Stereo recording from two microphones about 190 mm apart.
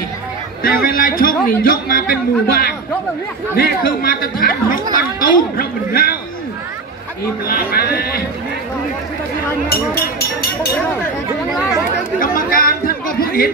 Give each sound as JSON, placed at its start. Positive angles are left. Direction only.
{"t": 0.7, "sound": "speech", "side_deg": 50}
{"t": 7.4, "sound": "speech", "side_deg": 50}
{"t": 12.2, "sound": "chatter", "side_deg": 50}